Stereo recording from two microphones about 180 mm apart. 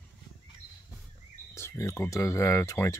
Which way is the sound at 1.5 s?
15° left (ahead or behind).